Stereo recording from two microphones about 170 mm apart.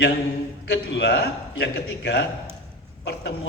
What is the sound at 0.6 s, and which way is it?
A man's voice, 85° left.